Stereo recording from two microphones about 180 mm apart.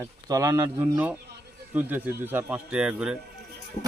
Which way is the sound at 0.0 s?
15° right (ahead or behind).